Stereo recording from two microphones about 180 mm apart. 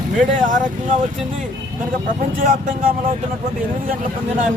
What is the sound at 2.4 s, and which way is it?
Speech, 50° right (ahead or behind).